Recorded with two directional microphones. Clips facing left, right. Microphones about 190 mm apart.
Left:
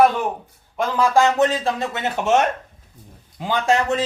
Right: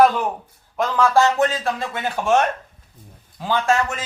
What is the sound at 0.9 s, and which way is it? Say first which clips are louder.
Speech: even; 15° left (ahead or behind).